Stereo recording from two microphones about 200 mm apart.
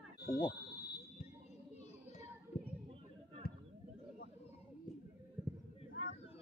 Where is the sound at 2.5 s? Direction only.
30° left (ahead or behind).